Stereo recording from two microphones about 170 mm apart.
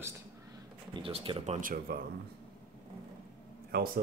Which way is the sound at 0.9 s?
35° right (ahead or behind).